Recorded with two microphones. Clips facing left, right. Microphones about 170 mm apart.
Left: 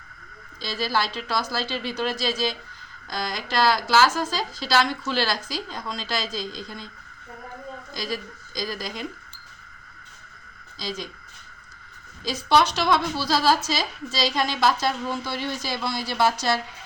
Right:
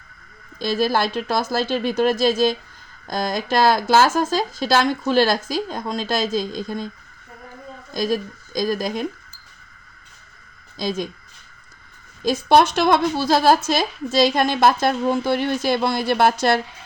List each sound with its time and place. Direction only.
0.6 s a woman's voice: 50° right (ahead or behind)
7.9 s a woman's voice: 50° right (ahead or behind)
10.8 s a woman's voice: 55° right (ahead or behind)
12.2 s a woman's voice: 50° right (ahead or behind)